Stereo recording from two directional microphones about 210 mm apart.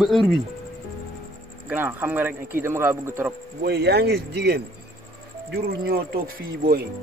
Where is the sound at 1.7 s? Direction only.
10° right (ahead or behind).